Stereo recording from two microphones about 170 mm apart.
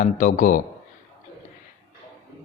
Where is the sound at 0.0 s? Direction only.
55° left (ahead or behind).